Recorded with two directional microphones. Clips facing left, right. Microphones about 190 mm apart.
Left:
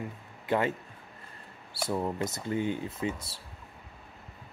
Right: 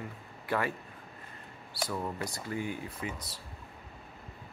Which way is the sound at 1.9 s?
25° left (ahead or behind).